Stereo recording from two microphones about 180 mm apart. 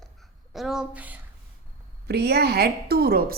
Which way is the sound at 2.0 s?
65° right (ahead or behind).